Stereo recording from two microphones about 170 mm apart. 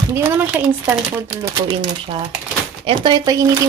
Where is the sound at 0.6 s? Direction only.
15° right (ahead or behind).